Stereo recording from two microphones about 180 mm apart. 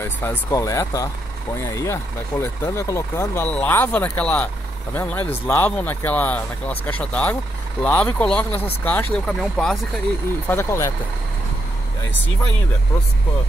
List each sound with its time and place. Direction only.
0.0 s speech: 15° left (ahead or behind)
10.5 s speech: 15° left (ahead or behind)